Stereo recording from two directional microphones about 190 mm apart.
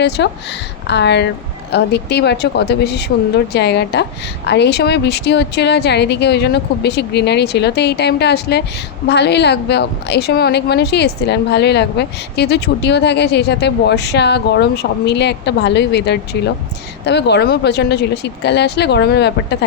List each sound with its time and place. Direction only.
0.2 s a woman's voice: 65° left (ahead or behind)